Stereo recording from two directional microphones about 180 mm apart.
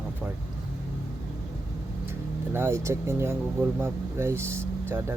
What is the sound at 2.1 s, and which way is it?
Speech, 10° right (ahead or behind).